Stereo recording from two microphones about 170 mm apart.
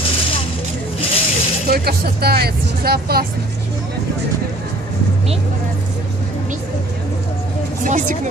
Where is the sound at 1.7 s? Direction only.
65° right (ahead or behind).